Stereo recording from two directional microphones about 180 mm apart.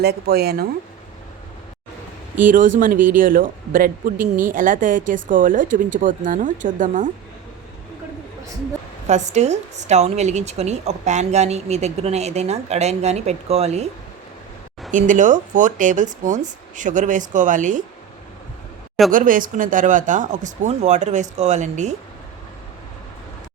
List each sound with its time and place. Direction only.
0.0 s speech: 60° right (ahead or behind)
2.3 s speech: 45° right (ahead or behind)
9.0 s a woman's voice: 40° right (ahead or behind)
14.8 s speech: 45° right (ahead or behind)
19.1 s speech: 50° right (ahead or behind)